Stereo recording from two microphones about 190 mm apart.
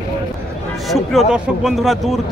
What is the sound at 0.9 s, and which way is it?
A man's voice, centre (ahead or behind).